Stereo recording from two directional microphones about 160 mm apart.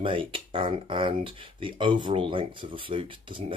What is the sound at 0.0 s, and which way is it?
Speech, 35° right (ahead or behind).